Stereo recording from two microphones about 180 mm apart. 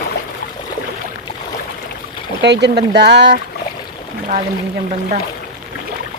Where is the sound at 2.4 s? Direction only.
70° right (ahead or behind).